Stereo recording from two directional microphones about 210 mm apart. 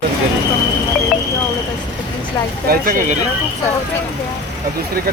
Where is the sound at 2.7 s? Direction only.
40° right (ahead or behind).